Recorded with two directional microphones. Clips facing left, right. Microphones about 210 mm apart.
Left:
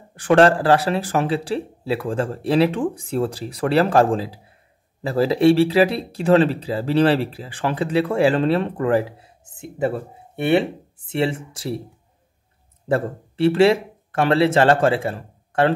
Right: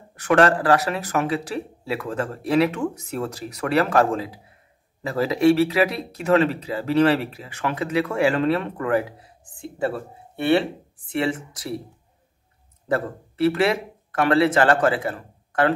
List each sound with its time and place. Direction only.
0.1 s speech: 30° left (ahead or behind)
12.8 s speech: 30° left (ahead or behind)